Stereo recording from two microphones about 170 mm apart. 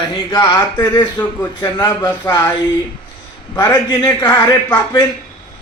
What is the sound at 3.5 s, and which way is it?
Speech, 20° left (ahead or behind).